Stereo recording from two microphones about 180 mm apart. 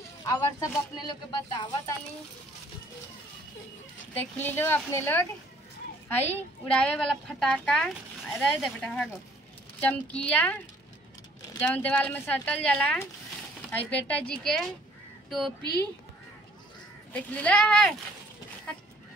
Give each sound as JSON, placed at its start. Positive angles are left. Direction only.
{"t": 0.3, "sound": "speech", "side_deg": 20}
{"t": 4.1, "sound": "a woman's voice", "side_deg": 10}
{"t": 17.1, "sound": "speech", "side_deg": 10}